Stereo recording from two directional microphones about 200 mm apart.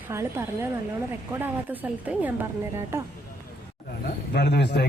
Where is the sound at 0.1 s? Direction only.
15° right (ahead or behind).